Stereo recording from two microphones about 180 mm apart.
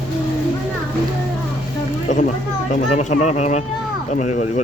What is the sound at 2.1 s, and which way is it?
Speech, 40° left (ahead or behind).